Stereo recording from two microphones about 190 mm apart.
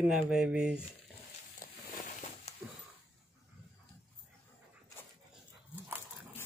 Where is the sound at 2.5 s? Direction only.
35° left (ahead or behind).